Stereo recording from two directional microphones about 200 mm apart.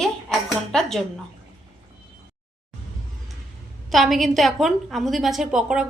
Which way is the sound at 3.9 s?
Centre (ahead or behind).